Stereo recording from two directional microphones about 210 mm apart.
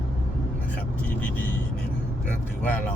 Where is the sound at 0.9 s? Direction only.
5° left (ahead or behind).